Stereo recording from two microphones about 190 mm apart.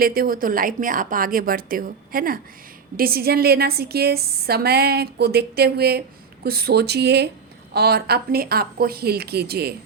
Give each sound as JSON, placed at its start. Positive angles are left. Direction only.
{"t": 0.0, "sound": "a woman's voice", "side_deg": -50}